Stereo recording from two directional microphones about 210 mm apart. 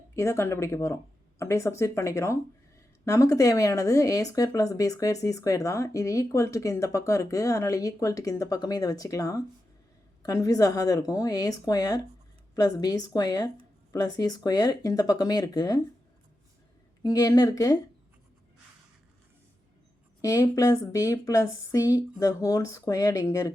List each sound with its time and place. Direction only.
0.2 s speech: 15° left (ahead or behind)
17.0 s speech: 15° left (ahead or behind)
20.2 s speech: 15° left (ahead or behind)